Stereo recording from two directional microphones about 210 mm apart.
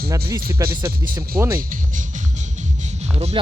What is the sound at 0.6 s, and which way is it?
Speech, 15° right (ahead or behind).